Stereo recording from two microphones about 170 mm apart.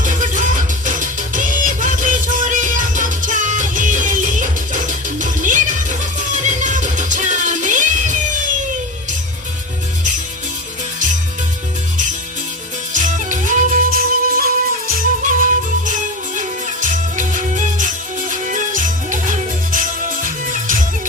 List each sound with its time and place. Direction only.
0.0 s music: 50° right (ahead or behind)
12.9 s music: 50° right (ahead or behind)